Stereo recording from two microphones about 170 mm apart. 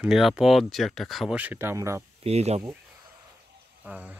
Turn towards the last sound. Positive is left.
turn(degrees=-10)  # may be behind; listen again after turning